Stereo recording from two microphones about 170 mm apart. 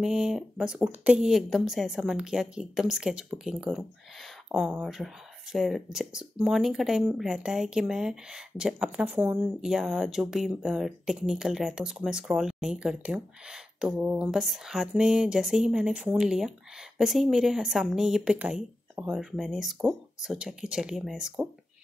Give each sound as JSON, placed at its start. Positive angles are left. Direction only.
{"t": 0.0, "sound": "speech", "side_deg": 0}